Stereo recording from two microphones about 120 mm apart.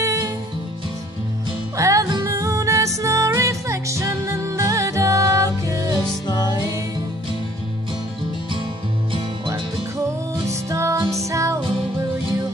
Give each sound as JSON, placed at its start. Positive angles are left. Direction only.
{"t": 0.0, "sound": "music", "side_deg": -25}
{"t": 1.8, "sound": "music", "side_deg": -25}
{"t": 5.9, "sound": "music", "side_deg": 35}
{"t": 10.5, "sound": "music", "side_deg": -25}